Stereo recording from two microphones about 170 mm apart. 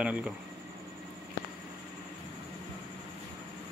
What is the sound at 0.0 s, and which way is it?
Speech, 5° right (ahead or behind).